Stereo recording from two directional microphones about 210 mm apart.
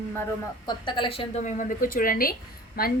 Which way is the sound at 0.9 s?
20° left (ahead or behind).